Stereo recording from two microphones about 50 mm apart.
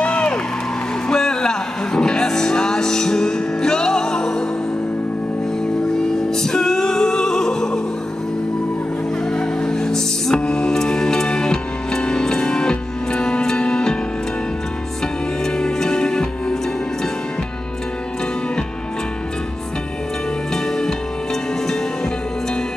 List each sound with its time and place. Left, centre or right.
0.0 s music: left
1.0 s music: centre
5.9 s music: centre
9.3 s music: centre
15.4 s music: centre